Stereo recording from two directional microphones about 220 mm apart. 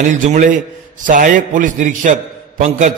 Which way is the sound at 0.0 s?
35° right (ahead or behind).